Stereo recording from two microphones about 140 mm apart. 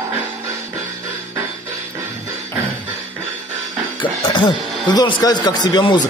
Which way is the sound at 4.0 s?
35° left (ahead or behind).